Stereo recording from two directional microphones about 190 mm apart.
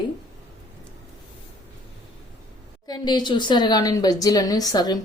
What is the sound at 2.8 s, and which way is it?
A woman's voice, 20° left (ahead or behind).